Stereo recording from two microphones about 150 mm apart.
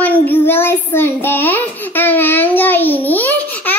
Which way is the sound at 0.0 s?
10° left (ahead or behind).